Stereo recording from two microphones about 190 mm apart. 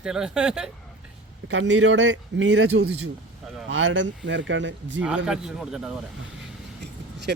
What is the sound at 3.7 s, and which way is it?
Speech, 80° right.